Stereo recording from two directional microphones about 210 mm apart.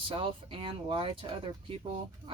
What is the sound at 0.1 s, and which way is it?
Speech, 25° right (ahead or behind).